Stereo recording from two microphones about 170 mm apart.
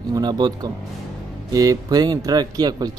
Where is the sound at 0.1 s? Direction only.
25° right (ahead or behind).